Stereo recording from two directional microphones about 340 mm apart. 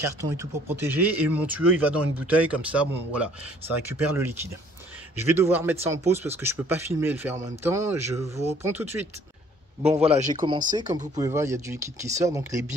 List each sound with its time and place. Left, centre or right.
0.2 s speech: centre
10.0 s speech: centre